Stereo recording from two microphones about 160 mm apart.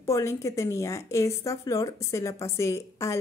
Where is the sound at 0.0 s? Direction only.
20° left (ahead or behind).